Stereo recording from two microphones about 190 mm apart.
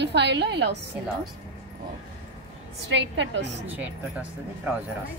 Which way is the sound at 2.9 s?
65° right (ahead or behind).